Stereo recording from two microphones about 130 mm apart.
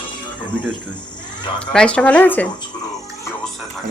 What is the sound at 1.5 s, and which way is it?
Speech, 10° left (ahead or behind).